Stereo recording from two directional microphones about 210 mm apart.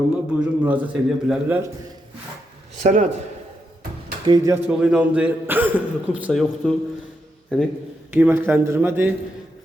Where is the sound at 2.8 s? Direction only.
35° right (ahead or behind).